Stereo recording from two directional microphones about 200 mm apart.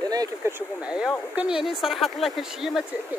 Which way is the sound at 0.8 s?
5° right (ahead or behind).